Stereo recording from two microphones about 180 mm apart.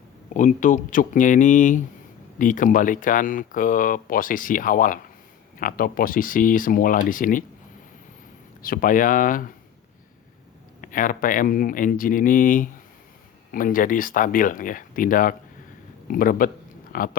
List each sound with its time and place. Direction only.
0.3 s speech: 45° left (ahead or behind)
8.6 s speech: 50° left (ahead or behind)
10.8 s speech: 50° left (ahead or behind)